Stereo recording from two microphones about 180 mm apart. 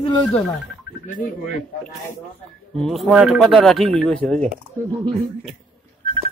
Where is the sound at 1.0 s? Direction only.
45° left (ahead or behind).